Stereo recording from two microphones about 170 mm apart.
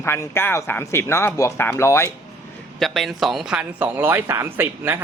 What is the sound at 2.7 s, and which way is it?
A man's voice, centre (ahead or behind).